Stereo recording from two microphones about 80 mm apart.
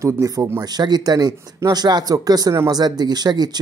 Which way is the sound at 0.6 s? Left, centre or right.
Right.